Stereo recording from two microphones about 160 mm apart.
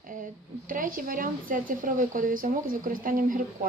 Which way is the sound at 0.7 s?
60° right (ahead or behind).